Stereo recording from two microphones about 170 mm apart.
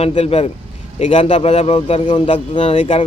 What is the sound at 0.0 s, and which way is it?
A man's voice, 35° left (ahead or behind).